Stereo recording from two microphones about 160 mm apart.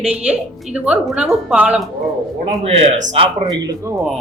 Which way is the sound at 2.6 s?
40° right (ahead or behind).